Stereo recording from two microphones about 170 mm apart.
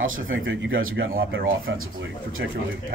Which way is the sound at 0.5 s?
90° right.